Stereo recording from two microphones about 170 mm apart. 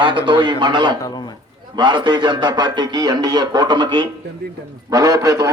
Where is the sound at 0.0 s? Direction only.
30° right (ahead or behind).